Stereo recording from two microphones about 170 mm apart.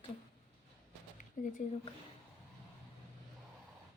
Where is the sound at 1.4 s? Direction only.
50° left (ahead or behind).